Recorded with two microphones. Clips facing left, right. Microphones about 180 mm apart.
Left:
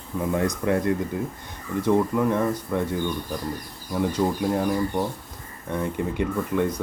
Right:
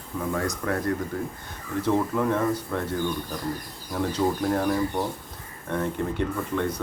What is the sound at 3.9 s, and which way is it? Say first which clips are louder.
Speech: left 1 dB; 10° left (ahead or behind).